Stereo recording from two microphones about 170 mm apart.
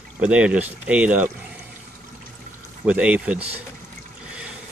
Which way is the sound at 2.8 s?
10° right (ahead or behind).